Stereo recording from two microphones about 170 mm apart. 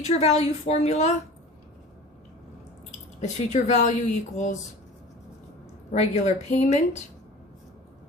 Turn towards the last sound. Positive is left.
turn(degrees=40)  # may be behind; listen again after turning